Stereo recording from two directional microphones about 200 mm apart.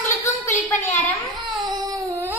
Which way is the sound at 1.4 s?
20° right (ahead or behind).